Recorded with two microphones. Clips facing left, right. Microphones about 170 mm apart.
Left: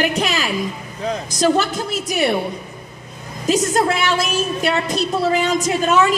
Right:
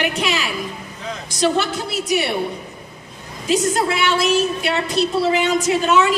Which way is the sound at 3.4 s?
40° left (ahead or behind).